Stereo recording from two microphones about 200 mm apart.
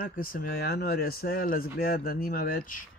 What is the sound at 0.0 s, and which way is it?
Speech, 45° left (ahead or behind).